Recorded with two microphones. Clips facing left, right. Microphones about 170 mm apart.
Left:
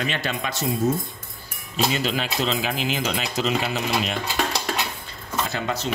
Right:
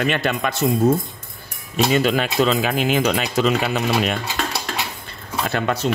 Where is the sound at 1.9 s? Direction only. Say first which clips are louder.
Right 7 dB; 55° right (ahead or behind).